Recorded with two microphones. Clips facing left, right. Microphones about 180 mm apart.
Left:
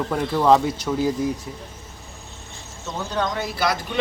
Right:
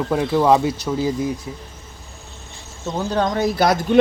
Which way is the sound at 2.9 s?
40° right (ahead or behind).